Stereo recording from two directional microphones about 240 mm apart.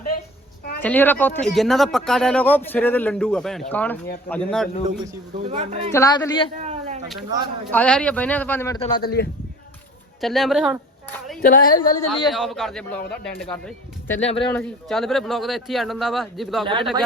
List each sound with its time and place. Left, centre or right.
0.8 s speech: centre
5.4 s speech: right
5.9 s speech: centre
6.6 s a sound: right
7.3 s a man's voice: centre
7.7 s speech: centre
9.0 s speech: left
10.2 s a woman's voice: centre
11.4 s speech: left
12.3 s speech: centre
14.2 s speech: left
14.5 s speech: centre